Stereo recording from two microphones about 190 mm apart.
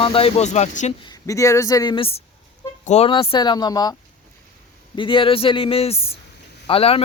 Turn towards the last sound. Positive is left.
turn(degrees=30)  # may be behind; listen again after turning